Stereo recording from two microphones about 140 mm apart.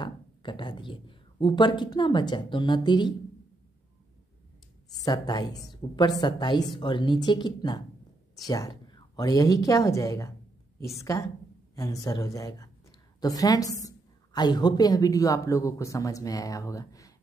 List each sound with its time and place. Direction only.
0.0 s speech: 35° left (ahead or behind)
5.0 s a woman's voice: 30° left (ahead or behind)